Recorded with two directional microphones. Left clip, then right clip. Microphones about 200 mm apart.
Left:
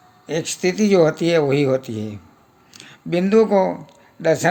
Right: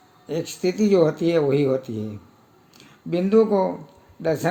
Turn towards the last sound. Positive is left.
turn(degrees=30)  # may be behind; listen again after turning